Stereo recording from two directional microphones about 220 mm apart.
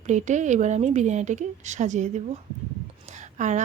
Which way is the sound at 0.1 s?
35° right (ahead or behind).